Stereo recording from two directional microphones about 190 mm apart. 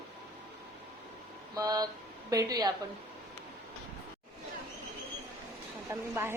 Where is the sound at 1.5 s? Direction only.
20° right (ahead or behind).